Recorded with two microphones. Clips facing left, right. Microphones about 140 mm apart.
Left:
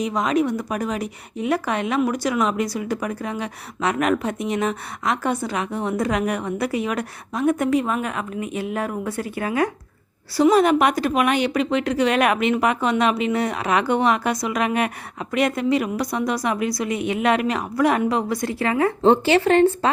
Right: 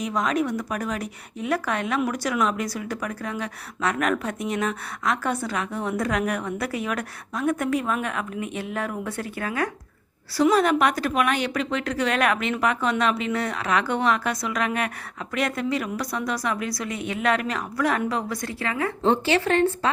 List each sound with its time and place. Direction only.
0.2 s a woman's voice: 5° left (ahead or behind); by 19.9 s 30° left (ahead or behind)